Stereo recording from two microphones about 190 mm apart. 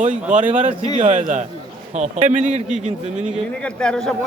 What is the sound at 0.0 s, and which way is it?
Speech, 40° right (ahead or behind).